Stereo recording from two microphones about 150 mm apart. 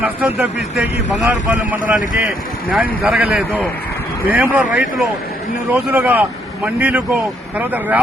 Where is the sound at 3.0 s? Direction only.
5° right (ahead or behind).